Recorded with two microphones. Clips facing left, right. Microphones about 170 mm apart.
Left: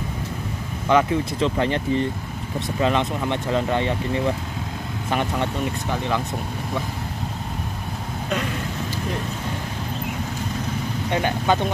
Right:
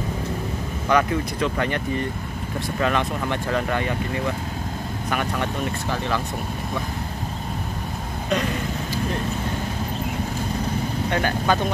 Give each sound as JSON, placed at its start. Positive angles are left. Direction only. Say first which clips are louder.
{"t": 0.8, "sound": "speech", "louder": "left 2 dB", "side_deg": 25}
{"t": 11.1, "sound": "speech", "louder": "left 2 dB", "side_deg": 20}